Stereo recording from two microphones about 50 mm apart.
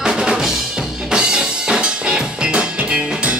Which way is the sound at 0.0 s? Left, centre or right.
Centre.